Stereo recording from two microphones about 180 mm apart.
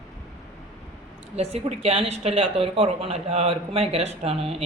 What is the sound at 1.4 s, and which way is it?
A woman's voice, 35° right (ahead or behind).